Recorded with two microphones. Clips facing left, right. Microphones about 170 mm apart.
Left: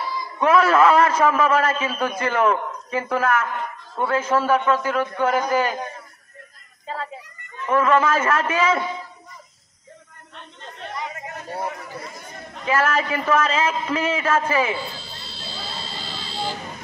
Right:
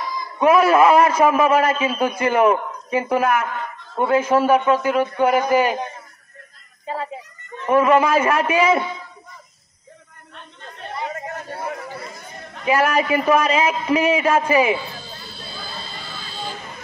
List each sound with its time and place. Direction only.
0.4 s a man's voice: 15° right (ahead or behind)
7.7 s a man's voice: 15° right (ahead or behind)
11.1 s chatter: 45° right (ahead or behind)
12.6 s a man's voice: 15° right (ahead or behind)
15.1 s buzzer: 80° left